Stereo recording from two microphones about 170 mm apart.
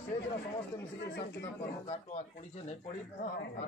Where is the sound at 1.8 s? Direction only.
40° left (ahead or behind).